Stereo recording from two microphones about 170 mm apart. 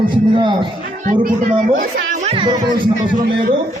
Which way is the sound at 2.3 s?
25° right (ahead or behind).